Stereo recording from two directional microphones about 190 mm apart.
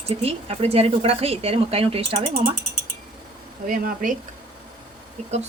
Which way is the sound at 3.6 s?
45° right (ahead or behind).